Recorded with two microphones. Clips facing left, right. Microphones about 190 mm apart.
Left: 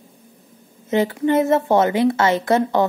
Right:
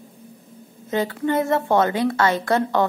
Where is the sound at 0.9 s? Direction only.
20° left (ahead or behind).